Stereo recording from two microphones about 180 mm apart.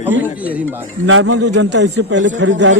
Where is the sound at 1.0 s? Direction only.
90° right.